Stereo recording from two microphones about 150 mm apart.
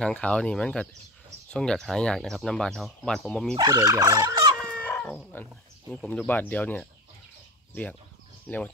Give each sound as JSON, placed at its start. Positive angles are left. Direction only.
{"t": 0.0, "sound": "speech", "side_deg": 10}
{"t": 3.5, "sound": "fowl", "side_deg": -25}
{"t": 4.6, "sound": "speech", "side_deg": 5}
{"t": 8.5, "sound": "speech", "side_deg": 5}